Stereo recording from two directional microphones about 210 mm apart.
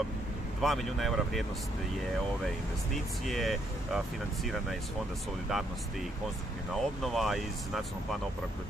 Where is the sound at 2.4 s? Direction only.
Centre (ahead or behind).